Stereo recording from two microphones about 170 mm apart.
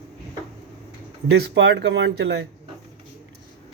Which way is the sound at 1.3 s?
90° right.